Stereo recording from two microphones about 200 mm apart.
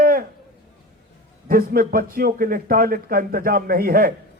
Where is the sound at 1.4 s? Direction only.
45° right (ahead or behind).